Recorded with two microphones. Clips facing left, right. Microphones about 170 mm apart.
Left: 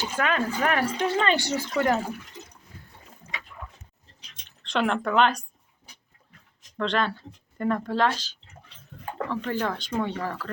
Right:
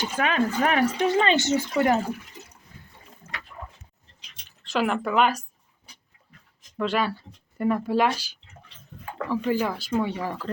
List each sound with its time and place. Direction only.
0.0 s speech: 15° right (ahead or behind)
4.4 s speech: 5° right (ahead or behind)
6.7 s speech: 5° right (ahead or behind)